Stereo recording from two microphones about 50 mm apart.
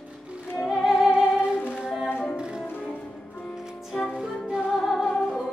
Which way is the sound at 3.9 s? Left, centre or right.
Centre.